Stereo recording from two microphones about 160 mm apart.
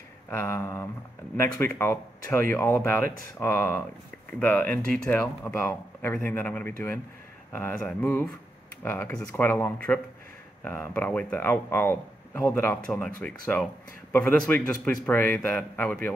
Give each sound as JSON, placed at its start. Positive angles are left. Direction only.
{"t": 0.3, "sound": "speech", "side_deg": 15}
{"t": 14.1, "sound": "speech", "side_deg": 10}